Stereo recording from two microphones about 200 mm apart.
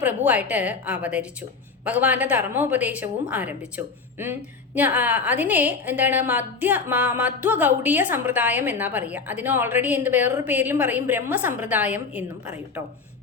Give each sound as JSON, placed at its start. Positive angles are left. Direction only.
{"t": 0.0, "sound": "a woman's voice", "side_deg": -10}